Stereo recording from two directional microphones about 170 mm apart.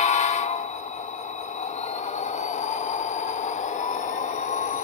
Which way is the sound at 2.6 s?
45° left (ahead or behind).